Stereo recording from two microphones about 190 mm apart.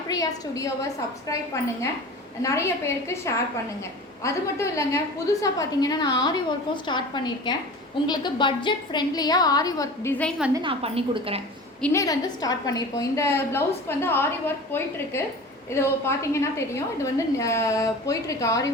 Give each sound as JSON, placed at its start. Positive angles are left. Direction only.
{"t": 0.1, "sound": "a woman's voice", "side_deg": 20}
{"t": 2.4, "sound": "a woman's voice", "side_deg": 15}
{"t": 10.5, "sound": "a woman's voice", "side_deg": -25}
{"t": 11.8, "sound": "a woman's voice", "side_deg": 15}